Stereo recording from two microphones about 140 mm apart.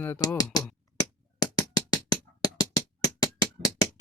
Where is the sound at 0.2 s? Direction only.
25° left (ahead or behind).